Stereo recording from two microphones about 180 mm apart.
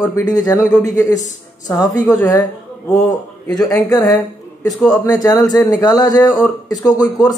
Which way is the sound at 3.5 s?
20° left (ahead or behind).